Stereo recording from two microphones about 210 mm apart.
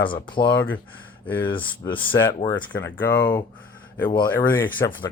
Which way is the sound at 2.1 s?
15° left (ahead or behind).